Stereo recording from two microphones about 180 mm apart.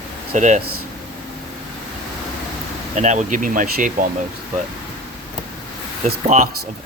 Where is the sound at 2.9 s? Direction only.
40° right (ahead or behind).